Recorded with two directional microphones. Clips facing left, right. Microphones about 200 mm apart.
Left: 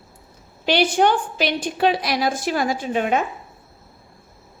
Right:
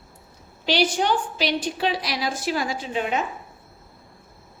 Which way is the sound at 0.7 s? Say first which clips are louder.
Left 4 dB; 55° left (ahead or behind).